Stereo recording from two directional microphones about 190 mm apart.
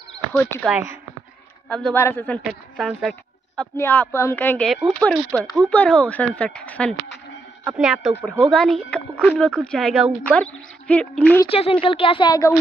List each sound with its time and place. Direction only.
0.3 s speech: 5° left (ahead or behind)
2.8 s speech: centre (ahead or behind)
3.7 s speech: 10° left (ahead or behind)
7.6 s speech: 5° right (ahead or behind)
8.5 s speech: 5° left (ahead or behind)
11.8 s speech: 30° left (ahead or behind)